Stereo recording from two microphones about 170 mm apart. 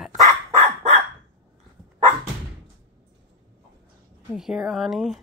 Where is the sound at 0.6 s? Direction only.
40° right (ahead or behind).